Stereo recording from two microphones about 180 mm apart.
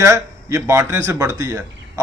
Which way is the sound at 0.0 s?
15° right (ahead or behind).